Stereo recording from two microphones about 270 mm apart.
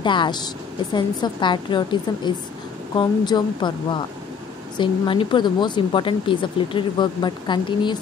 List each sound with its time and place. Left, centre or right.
0.0 s speech: centre